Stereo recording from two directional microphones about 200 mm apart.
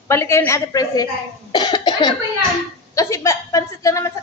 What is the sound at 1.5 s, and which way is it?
Cough, 20° left (ahead or behind).